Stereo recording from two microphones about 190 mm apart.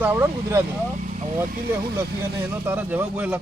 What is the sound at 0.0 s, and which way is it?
Speech, 10° right (ahead or behind).